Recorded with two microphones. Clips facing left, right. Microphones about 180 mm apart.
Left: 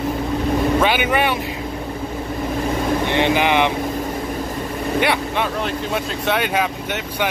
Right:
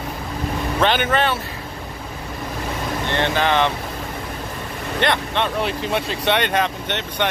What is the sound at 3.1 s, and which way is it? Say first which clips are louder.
Speech: left 1 dB; 15° left (ahead or behind).